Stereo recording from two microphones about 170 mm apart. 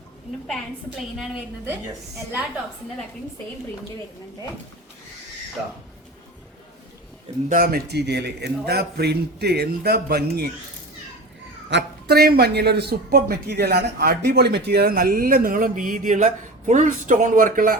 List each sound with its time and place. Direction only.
7.5 s a man's voice: 60° right (ahead or behind)
11.7 s speech: 70° right (ahead or behind); by 17.7 s 55° right (ahead or behind)